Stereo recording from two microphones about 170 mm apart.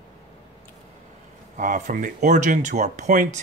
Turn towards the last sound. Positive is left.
turn(degrees=-45)  # may be behind; listen again after turning